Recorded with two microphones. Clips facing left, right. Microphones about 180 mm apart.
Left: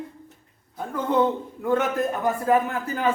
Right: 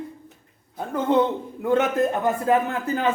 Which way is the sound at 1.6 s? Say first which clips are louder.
Right 3 dB; 20° right (ahead or behind).